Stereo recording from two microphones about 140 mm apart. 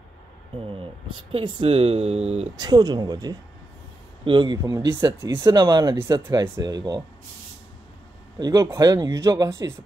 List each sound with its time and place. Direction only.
0.6 s a sound: 40° right (ahead or behind)
1.3 s speech: 40° right (ahead or behind)
2.5 s speech: 30° right (ahead or behind)
8.4 s speech: 25° right (ahead or behind)